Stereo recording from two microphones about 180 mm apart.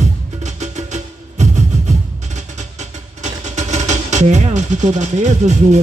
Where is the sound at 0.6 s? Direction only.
40° right (ahead or behind).